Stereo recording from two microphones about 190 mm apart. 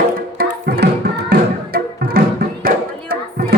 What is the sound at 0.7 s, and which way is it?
Music, 55° right (ahead or behind).